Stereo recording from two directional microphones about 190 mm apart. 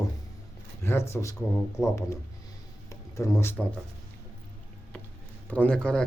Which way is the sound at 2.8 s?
15° left (ahead or behind).